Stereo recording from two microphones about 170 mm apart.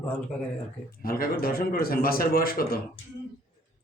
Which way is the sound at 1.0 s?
60° left (ahead or behind).